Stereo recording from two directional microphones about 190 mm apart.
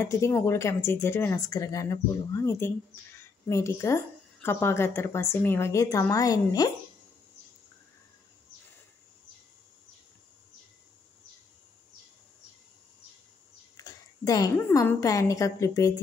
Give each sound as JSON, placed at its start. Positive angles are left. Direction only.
{"t": 0.0, "sound": "a woman's voice", "side_deg": 15}
{"t": 13.7, "sound": "a woman's voice", "side_deg": 20}